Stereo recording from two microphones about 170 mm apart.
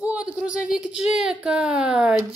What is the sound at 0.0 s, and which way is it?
Speech, 5° right (ahead or behind).